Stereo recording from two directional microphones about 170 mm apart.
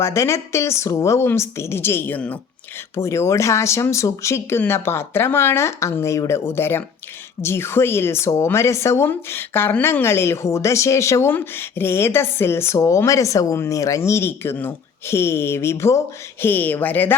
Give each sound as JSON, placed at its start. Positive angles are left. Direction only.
{"t": 0.0, "sound": "a woman's voice", "side_deg": 15}